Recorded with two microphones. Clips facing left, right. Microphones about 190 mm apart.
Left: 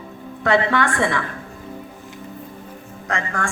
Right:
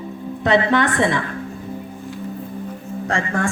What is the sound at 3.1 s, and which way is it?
Speech, 25° right (ahead or behind).